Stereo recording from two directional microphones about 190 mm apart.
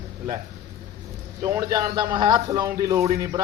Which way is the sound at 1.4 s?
20° right (ahead or behind).